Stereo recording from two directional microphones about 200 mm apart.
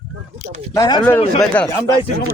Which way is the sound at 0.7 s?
20° left (ahead or behind).